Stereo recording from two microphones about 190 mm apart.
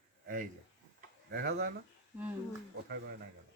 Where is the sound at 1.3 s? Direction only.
50° right (ahead or behind).